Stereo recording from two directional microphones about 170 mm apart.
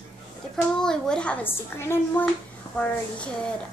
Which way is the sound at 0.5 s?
5° left (ahead or behind).